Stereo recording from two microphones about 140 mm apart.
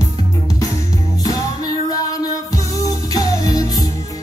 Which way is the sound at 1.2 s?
25° left (ahead or behind).